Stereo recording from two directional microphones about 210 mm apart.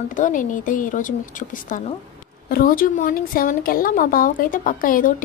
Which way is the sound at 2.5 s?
40° left (ahead or behind).